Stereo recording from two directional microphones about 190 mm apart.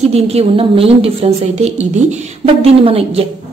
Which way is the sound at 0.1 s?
30° right (ahead or behind).